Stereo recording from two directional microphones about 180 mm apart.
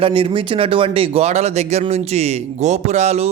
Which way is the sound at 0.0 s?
30° right (ahead or behind).